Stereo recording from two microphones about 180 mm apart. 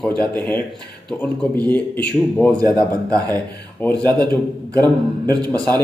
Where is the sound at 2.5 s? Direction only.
20° right (ahead or behind).